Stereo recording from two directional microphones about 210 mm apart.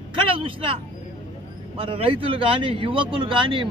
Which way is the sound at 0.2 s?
25° right (ahead or behind).